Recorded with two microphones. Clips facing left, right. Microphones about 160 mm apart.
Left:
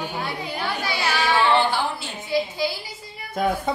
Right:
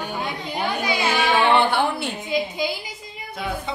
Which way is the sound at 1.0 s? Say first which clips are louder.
Right 1 dB; 55° right (ahead or behind).